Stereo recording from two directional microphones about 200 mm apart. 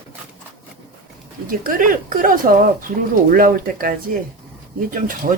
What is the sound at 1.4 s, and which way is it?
Speech, 45° right (ahead or behind).